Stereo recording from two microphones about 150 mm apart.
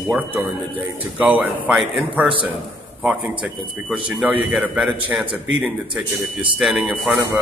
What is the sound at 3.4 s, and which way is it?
A man's voice, 5° right (ahead or behind).